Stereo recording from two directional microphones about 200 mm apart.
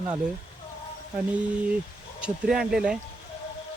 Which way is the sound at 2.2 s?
5° right (ahead or behind).